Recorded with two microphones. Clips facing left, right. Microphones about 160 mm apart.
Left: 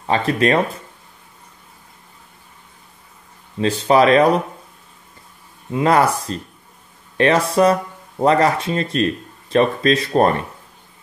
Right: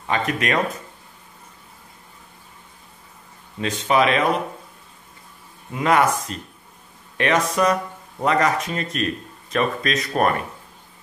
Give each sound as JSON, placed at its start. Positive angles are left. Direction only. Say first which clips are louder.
{"t": 0.0, "sound": "speech", "louder": "left 6 dB", "side_deg": 30}
{"t": 3.5, "sound": "speech", "louder": "left 5 dB", "side_deg": 30}
{"t": 5.7, "sound": "speech", "louder": "left 3 dB", "side_deg": 30}